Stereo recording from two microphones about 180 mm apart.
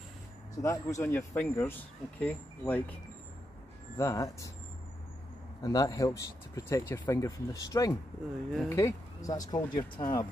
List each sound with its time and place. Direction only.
0.6 s speech: 15° left (ahead or behind)
5.6 s speech: 20° left (ahead or behind)